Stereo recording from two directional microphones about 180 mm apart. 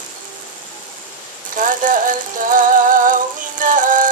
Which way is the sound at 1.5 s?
45° right (ahead or behind).